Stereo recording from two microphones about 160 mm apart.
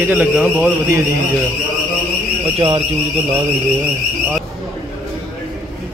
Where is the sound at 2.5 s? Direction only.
35° right (ahead or behind).